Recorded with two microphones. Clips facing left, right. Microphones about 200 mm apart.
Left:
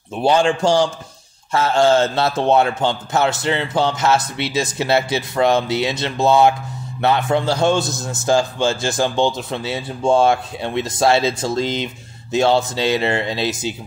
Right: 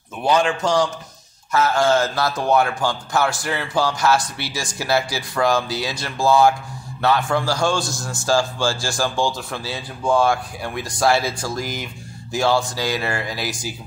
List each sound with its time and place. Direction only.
0.2 s speech: 30° left (ahead or behind)